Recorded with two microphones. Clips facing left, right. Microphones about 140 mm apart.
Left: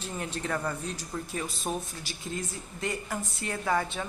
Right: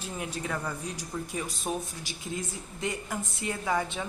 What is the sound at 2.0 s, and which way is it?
A woman's voice, 20° right (ahead or behind).